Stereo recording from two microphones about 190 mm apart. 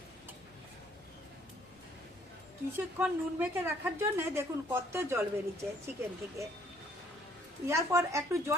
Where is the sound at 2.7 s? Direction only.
10° right (ahead or behind).